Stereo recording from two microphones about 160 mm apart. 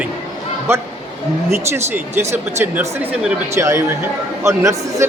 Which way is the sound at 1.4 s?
15° right (ahead or behind).